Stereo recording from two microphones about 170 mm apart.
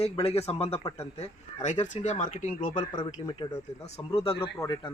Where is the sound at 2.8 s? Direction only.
25° left (ahead or behind).